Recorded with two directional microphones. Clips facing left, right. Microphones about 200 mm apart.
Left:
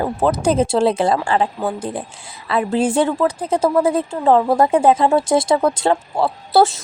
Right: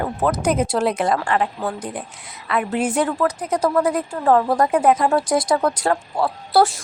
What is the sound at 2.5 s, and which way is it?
A woman's voice, 30° left (ahead or behind).